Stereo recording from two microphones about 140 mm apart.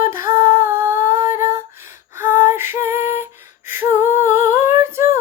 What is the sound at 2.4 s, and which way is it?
Music, 15° right (ahead or behind).